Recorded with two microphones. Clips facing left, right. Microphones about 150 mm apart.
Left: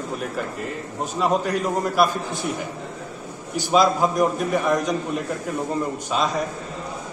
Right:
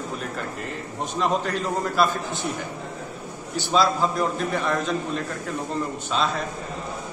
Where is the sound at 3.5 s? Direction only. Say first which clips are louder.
Left 3 dB; 15° left (ahead or behind).